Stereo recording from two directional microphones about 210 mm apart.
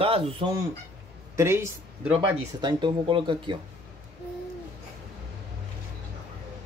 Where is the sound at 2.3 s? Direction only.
25° right (ahead or behind).